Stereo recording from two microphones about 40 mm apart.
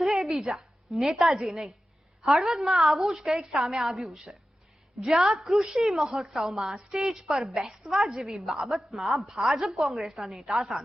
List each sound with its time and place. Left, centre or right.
0.3 s a woman's voice: centre
1.4 s a woman's voice: centre
2.2 s a woman's voice: centre
5.7 s a woman's voice: centre
7.1 s a woman's voice: centre
9.2 s a woman's voice: centre
9.5 s a woman's voice: centre